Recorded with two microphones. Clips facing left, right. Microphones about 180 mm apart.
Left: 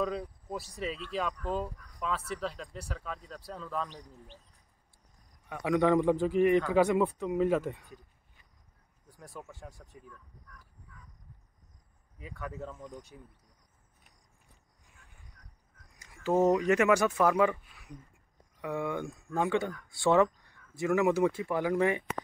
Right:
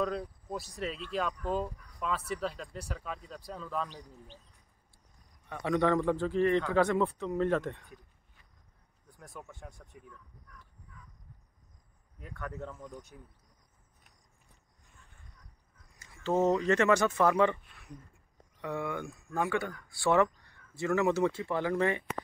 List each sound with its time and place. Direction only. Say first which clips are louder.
0.0 s speech: even; centre (ahead or behind)
5.5 s speech: left 2 dB; 10° left (ahead or behind)
9.5 s speech: left 1 dB; 5° left (ahead or behind)
12.2 s speech: even; 5° left (ahead or behind)
16.0 s speech: left 2 dB; 10° left (ahead or behind)
18.6 s speech: left 2 dB; 15° left (ahead or behind)